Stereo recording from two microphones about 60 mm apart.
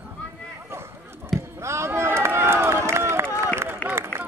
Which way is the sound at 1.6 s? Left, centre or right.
Right.